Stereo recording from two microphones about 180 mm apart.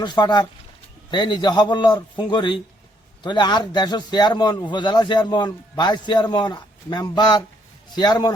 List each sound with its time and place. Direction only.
0.0 s a man's voice: 25° left (ahead or behind)